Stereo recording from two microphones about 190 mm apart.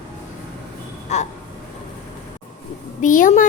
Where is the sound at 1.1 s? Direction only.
35° left (ahead or behind).